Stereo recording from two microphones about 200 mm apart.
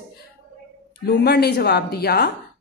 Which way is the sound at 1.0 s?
50° left (ahead or behind).